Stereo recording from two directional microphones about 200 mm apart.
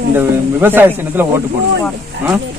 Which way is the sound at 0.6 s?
10° right (ahead or behind).